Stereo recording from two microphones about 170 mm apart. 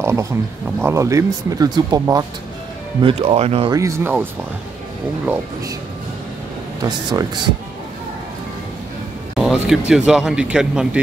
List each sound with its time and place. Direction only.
0.0 s a sound: 15° right (ahead or behind)
0.7 s speech: 15° right (ahead or behind)
3.0 s speech: 35° right (ahead or behind)
3.7 s speech: 15° right (ahead or behind)
6.8 s speech: 25° right (ahead or behind)
9.4 s speech: 5° right (ahead or behind)